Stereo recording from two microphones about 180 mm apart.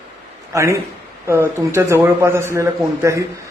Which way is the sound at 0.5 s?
15° right (ahead or behind).